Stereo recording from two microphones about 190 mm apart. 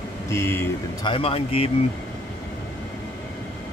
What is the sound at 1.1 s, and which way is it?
Speech, 30° left (ahead or behind).